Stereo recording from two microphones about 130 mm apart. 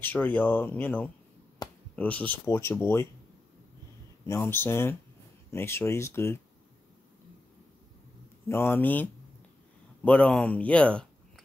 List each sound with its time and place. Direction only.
0.0 s speech: 15° left (ahead or behind)
1.6 s a sound: 30° left (ahead or behind)
2.0 s speech: 10° left (ahead or behind)
4.3 s speech: 15° left (ahead or behind)
8.5 s speech: 20° left (ahead or behind)